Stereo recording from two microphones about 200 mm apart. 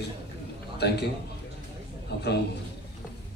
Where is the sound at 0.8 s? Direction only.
55° left (ahead or behind).